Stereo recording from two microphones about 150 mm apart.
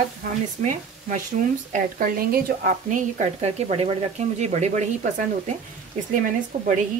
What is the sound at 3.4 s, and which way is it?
Speech, 45° right (ahead or behind).